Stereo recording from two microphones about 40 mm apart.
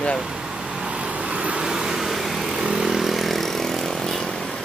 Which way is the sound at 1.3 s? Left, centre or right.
Right.